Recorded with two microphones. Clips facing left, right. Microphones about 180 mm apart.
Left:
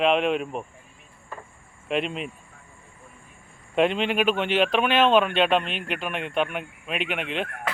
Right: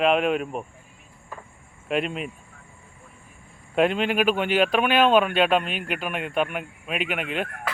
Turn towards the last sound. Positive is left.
turn(degrees=-5)  # may be behind; listen again after turning